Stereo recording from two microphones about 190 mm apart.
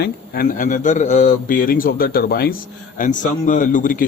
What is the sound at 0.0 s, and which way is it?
Speech, 50° left (ahead or behind).